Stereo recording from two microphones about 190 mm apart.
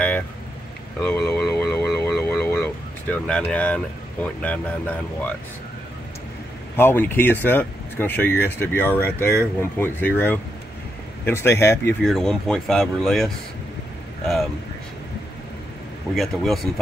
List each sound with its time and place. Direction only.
1.0 s a sound: 15° left (ahead or behind)
2.0 s speech: 15° left (ahead or behind)
6.8 s speech: 10° left (ahead or behind)
12.0 s speech: centre (ahead or behind)
16.2 s speech: centre (ahead or behind)